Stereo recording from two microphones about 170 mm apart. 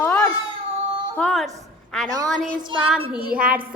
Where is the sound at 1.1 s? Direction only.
5° left (ahead or behind).